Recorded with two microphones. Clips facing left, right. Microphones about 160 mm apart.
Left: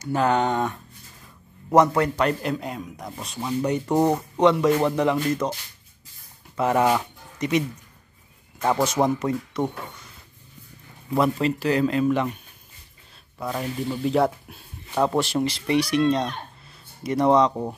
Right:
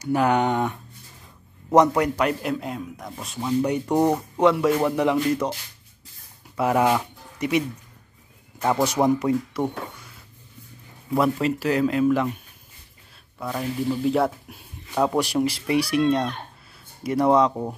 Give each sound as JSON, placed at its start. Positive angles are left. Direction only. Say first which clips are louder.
{"t": 0.0, "sound": "speech", "louder": "right 1 dB", "side_deg": -15}
{"t": 1.8, "sound": "a man's voice", "louder": "even", "side_deg": -20}
{"t": 2.1, "sound": "speech", "louder": "even", "side_deg": -5}
{"t": 8.7, "sound": "speech", "louder": "right 3 dB", "side_deg": -15}
{"t": 11.1, "sound": "speech", "louder": "even", "side_deg": 0}
{"t": 13.4, "sound": "speech", "louder": "right 1 dB", "side_deg": 0}